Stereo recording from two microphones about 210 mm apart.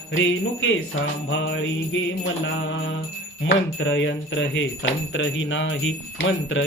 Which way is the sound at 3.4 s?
65° left (ahead or behind).